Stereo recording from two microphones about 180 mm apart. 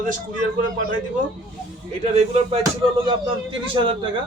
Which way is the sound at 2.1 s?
35° right (ahead or behind).